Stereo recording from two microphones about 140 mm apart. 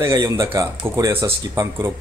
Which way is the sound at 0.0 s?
20° right (ahead or behind).